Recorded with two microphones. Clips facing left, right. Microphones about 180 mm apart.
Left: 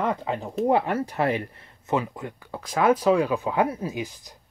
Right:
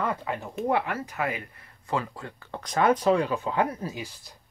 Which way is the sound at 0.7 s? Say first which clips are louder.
Left 5 dB; 35° left (ahead or behind).